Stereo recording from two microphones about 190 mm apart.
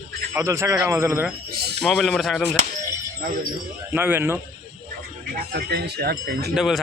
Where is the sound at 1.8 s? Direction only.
Centre (ahead or behind).